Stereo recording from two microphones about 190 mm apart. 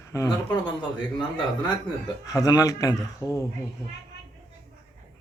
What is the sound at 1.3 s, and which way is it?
A man's voice, 25° left (ahead or behind).